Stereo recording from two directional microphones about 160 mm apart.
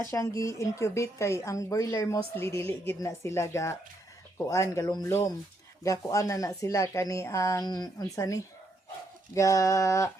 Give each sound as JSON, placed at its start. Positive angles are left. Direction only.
{"t": 0.1, "sound": "a woman's voice", "side_deg": 20}